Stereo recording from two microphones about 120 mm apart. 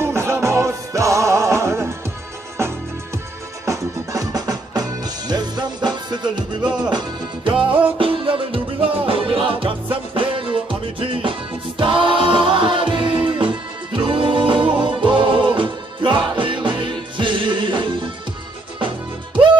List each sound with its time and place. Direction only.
0.0 s music: 20° right (ahead or behind)
6.6 s music: 5° right (ahead or behind)
6.9 s music: 35° right (ahead or behind)
7.5 s music: 10° right (ahead or behind)
8.0 s music: 45° right (ahead or behind)